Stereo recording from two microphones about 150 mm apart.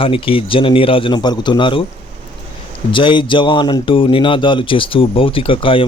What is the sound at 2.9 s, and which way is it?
Speech, 35° left (ahead or behind).